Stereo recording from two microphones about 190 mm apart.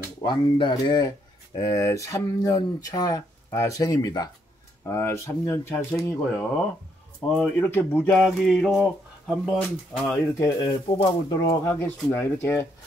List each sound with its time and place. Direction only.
0.2 s speech: 25° left (ahead or behind); by 10.2 s 5° left (ahead or behind)
10.4 s speech: 20° left (ahead or behind)